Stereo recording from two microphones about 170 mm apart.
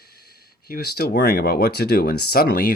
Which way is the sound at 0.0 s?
65° left (ahead or behind).